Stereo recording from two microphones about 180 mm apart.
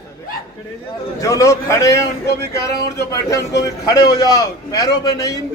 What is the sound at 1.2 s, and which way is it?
Speech, 20° left (ahead or behind).